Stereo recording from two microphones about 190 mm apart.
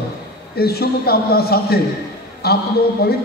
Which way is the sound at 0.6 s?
55° left (ahead or behind).